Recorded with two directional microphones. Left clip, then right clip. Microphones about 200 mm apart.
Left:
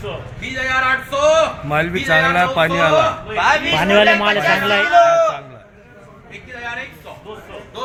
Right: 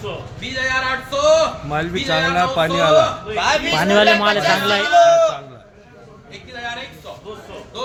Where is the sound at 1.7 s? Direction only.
30° left (ahead or behind).